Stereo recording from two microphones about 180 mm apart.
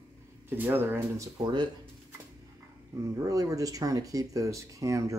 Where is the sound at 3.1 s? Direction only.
20° right (ahead or behind).